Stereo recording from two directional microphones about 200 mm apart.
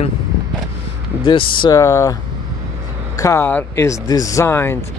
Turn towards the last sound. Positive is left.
turn(degrees=10)  # may be behind; listen again after turning